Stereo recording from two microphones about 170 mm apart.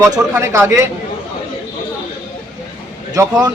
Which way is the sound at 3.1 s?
20° right (ahead or behind).